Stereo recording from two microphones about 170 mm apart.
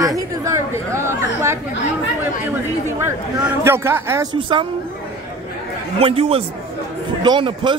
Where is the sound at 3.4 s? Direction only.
15° right (ahead or behind).